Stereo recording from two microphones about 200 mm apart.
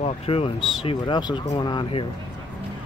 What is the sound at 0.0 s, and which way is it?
Speech, 30° left (ahead or behind).